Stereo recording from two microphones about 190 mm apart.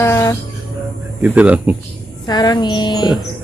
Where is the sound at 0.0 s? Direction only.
15° left (ahead or behind).